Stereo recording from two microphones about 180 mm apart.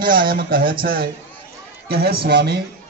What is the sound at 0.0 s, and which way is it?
A man's voice, 50° right (ahead or behind).